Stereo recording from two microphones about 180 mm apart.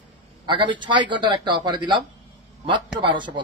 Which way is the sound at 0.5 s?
25° right (ahead or behind).